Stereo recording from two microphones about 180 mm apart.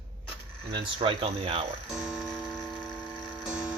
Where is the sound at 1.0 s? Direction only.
30° right (ahead or behind).